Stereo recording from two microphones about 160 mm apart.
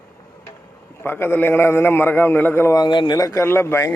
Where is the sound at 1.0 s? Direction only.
15° left (ahead or behind).